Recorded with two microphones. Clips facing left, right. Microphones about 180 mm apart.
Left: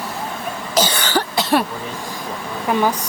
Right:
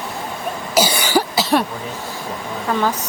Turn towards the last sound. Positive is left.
turn(degrees=15)  # may be behind; listen again after turning